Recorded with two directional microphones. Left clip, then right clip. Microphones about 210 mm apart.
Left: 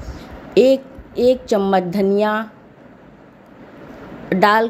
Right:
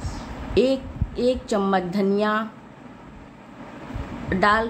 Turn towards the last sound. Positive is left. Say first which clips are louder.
# left 5 dB
turn(degrees=35)  # may be behind; listen again after turning